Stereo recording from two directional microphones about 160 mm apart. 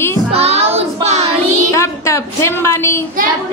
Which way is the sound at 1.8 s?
15° left (ahead or behind).